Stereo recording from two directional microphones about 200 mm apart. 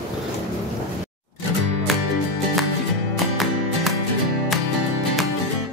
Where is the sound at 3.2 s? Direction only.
Centre (ahead or behind).